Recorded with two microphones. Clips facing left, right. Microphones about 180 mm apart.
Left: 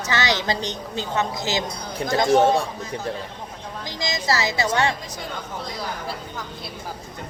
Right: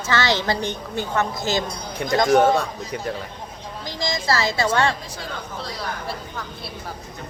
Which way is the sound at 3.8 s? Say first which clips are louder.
Right 1 dB; 20° left (ahead or behind).